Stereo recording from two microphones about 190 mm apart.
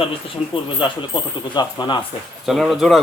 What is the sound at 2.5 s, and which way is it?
Speech, centre (ahead or behind).